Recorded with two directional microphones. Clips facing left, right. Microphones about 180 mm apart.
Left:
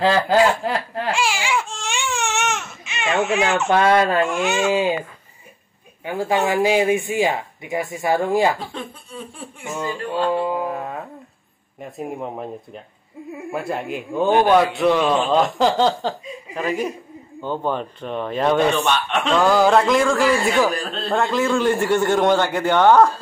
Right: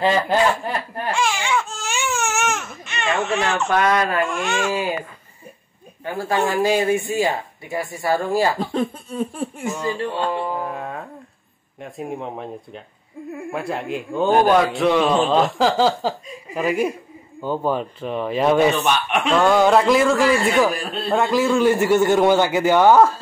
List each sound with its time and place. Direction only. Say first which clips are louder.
0.7 s laughter: left 2 dB; 90° left
1.1 s baby cry: right 2 dB; 10° left (ahead or behind)
1.8 s baby cry: right 1 dB; 5° right (ahead or behind)
3.6 s speech: left 3 dB; 30° left (ahead or behind)
4.3 s a man's voice: left 3 dB; 5° left (ahead or behind)
4.6 s speech: left 7 dB; 25° left (ahead or behind)
6.0 s speech: left 1 dB; 15° left (ahead or behind)
8.7 s laughter: right 10 dB; 45° right (ahead or behind)
9.9 s music: left 2 dB; 25° right (ahead or behind)
10.4 s speech: left 3 dB; 15° left (ahead or behind)
10.7 s a man's voice: left 2 dB; centre (ahead or behind)
19.0 s speech: right 1 dB; 15° right (ahead or behind)
19.3 s a man's voice: even; centre (ahead or behind)